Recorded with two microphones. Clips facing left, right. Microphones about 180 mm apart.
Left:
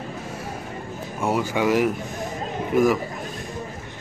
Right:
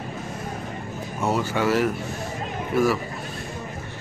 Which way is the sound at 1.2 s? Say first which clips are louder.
Left 1 dB; 15° left (ahead or behind).